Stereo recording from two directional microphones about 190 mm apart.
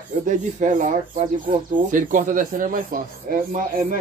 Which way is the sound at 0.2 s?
40° right (ahead or behind).